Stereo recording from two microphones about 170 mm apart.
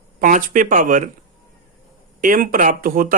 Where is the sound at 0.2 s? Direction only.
55° right (ahead or behind).